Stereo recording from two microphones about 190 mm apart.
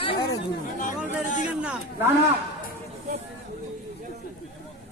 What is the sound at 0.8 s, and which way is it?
Chatter, 40° left (ahead or behind).